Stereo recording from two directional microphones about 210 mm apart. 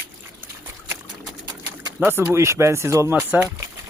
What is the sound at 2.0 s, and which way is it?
Speech, 10° right (ahead or behind).